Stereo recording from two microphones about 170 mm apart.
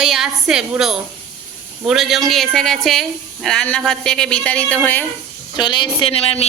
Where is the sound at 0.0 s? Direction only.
5° right (ahead or behind).